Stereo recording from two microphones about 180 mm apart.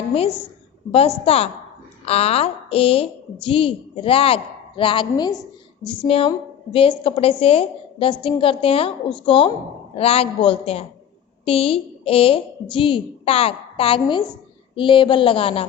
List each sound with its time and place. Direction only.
0.9 s a woman's voice: 30° left (ahead or behind)